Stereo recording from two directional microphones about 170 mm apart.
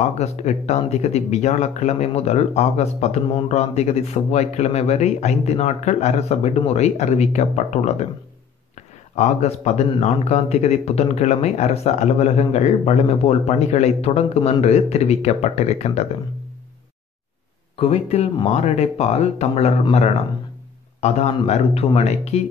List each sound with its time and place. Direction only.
0.2 s speech: 40° left (ahead or behind)
9.1 s speech: 40° left (ahead or behind)
17.7 s speech: 35° left (ahead or behind)